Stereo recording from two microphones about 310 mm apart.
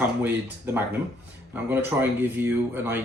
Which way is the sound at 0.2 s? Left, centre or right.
Centre.